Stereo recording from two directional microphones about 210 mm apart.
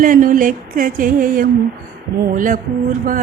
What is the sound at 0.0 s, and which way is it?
Speech, 40° right (ahead or behind).